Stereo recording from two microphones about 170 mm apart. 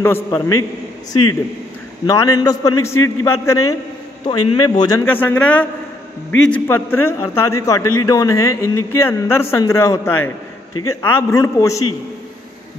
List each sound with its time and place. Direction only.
0.0 s a man's voice: 15° left (ahead or behind)
2.0 s a man's voice: 20° left (ahead or behind)
5.0 s a man's voice: 10° left (ahead or behind)